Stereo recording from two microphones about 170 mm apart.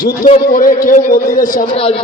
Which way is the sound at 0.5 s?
55° left (ahead or behind).